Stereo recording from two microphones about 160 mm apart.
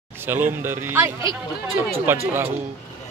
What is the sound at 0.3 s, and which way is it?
Speech, 15° right (ahead or behind).